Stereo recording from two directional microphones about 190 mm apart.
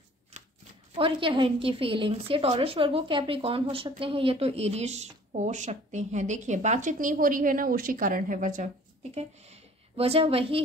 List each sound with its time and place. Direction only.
0.9 s a woman's voice: 30° right (ahead or behind)